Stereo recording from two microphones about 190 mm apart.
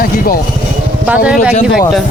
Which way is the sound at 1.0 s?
5° right (ahead or behind).